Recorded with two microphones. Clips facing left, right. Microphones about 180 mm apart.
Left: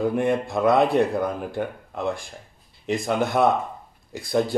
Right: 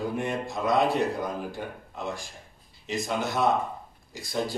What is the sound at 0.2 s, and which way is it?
A man's voice, 55° left (ahead or behind).